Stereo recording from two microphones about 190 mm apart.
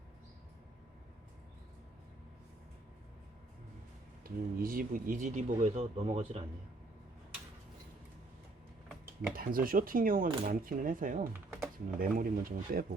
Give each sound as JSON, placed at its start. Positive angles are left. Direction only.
{"t": 4.2, "sound": "speech", "side_deg": -50}
{"t": 9.3, "sound": "speech", "side_deg": -50}